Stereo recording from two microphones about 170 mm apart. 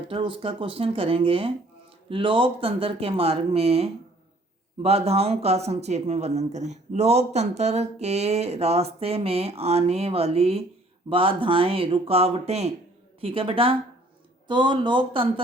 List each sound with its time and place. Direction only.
0.1 s speech: 30° right (ahead or behind)